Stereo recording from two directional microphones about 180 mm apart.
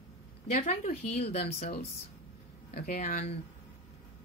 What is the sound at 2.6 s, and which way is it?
Speech, 55° left (ahead or behind).